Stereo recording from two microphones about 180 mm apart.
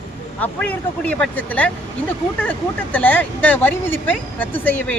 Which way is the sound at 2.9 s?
10° left (ahead or behind).